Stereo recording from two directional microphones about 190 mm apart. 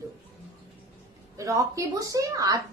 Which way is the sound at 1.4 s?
15° right (ahead or behind).